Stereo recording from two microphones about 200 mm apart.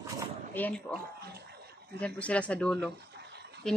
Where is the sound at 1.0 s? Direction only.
50° right (ahead or behind).